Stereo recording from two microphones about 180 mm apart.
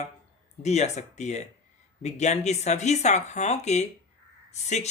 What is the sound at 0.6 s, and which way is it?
Speech, 40° left (ahead or behind).